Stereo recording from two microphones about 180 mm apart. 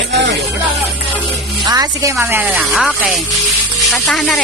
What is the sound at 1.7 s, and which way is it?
Speech, 20° right (ahead or behind).